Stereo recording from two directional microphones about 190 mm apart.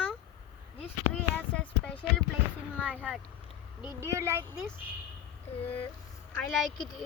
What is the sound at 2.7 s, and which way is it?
Speech, 5° right (ahead or behind).